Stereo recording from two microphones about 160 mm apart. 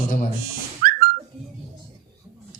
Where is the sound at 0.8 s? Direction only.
65° right (ahead or behind).